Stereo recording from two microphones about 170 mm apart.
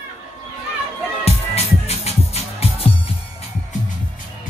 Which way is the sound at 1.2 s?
35° left (ahead or behind).